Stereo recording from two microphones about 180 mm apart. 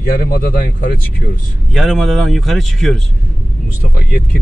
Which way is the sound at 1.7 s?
Centre (ahead or behind).